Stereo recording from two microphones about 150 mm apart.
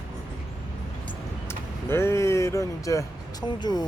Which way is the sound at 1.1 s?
15° left (ahead or behind).